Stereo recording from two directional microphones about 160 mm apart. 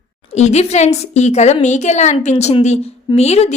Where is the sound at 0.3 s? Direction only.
45° left (ahead or behind).